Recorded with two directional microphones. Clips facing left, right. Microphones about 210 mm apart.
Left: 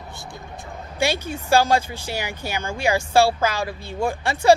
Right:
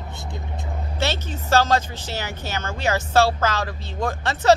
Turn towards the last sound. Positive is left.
turn(degrees=10)  # may be behind; listen again after turning